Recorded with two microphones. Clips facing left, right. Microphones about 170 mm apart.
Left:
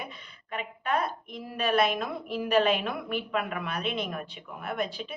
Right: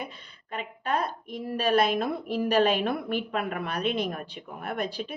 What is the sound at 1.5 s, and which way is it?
A woman's voice, 35° right (ahead or behind).